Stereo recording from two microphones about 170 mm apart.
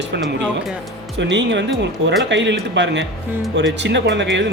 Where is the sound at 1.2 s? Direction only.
90° right.